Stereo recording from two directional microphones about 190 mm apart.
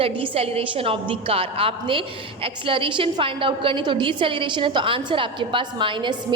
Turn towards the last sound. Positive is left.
turn(degrees=-25)  # may be behind; listen again after turning